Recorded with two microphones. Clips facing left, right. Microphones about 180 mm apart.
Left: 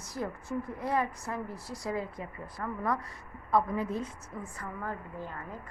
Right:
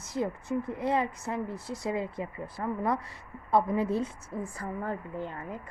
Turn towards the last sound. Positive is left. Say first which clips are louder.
# right 4 dB
turn(degrees=-30)  # may be behind; listen again after turning